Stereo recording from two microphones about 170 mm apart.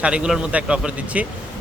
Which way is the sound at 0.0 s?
5° right (ahead or behind).